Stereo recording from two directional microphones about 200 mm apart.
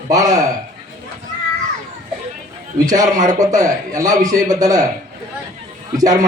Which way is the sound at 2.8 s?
20° right (ahead or behind).